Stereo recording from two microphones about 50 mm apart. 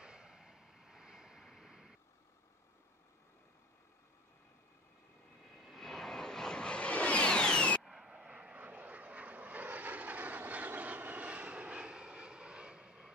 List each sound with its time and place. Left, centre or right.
0.0 s vehicle: centre
5.6 s vehicle: centre
7.8 s vehicle: centre
8.1 s vehicle: right